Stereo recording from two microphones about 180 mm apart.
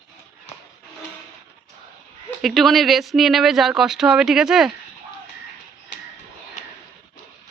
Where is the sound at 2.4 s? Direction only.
Centre (ahead or behind).